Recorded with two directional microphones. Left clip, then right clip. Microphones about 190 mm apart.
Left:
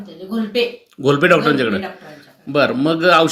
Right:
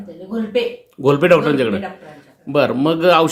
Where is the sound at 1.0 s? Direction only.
15° right (ahead or behind).